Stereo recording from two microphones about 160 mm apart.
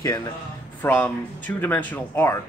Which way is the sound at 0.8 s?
10° left (ahead or behind).